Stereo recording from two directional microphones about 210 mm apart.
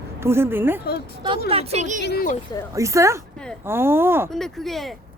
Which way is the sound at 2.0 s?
50° left (ahead or behind).